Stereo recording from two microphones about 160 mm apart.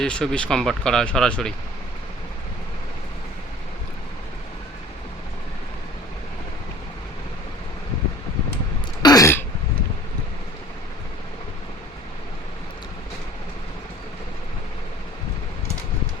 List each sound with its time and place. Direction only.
0.0 s speech: 5° left (ahead or behind)
9.0 s throat clearing: 25° left (ahead or behind)